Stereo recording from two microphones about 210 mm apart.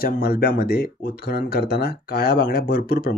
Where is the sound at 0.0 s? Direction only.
45° left (ahead or behind).